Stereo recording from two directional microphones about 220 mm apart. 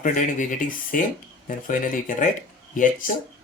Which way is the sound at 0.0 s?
35° left (ahead or behind).